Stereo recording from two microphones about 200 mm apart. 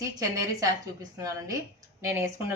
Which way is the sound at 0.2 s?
15° right (ahead or behind).